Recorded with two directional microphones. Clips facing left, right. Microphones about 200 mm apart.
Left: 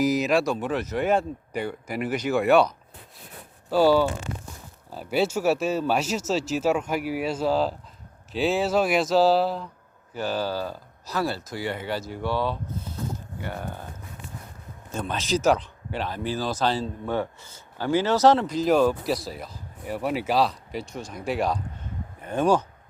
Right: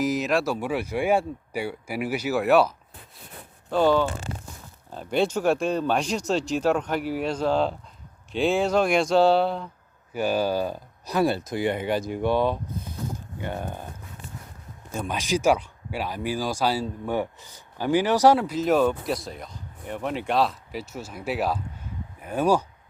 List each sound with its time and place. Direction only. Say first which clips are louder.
0.0 s speech: left 2 dB; centre (ahead or behind)
10.1 s speech: right 4 dB; 10° right (ahead or behind)
14.9 s speech: even; 10° right (ahead or behind)